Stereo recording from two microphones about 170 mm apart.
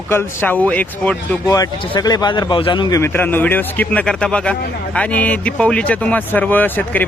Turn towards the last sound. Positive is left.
turn(degrees=10)  # may be behind; listen again after turning